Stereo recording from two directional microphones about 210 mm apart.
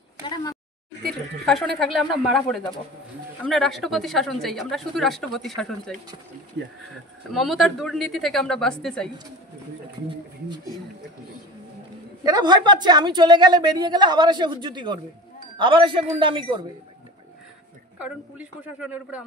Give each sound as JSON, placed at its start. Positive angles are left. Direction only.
{"t": 0.2, "sound": "a woman's voice", "side_deg": 20}
{"t": 1.0, "sound": "a woman's voice", "side_deg": 0}
{"t": 6.6, "sound": "speech", "side_deg": -50}
{"t": 7.3, "sound": "a woman's voice", "side_deg": 0}
{"t": 12.2, "sound": "a woman's voice", "side_deg": -20}
{"t": 18.0, "sound": "a woman's voice", "side_deg": -5}